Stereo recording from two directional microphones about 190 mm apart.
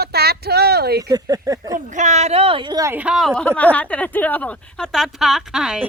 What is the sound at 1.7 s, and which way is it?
A man's voice, 40° right (ahead or behind).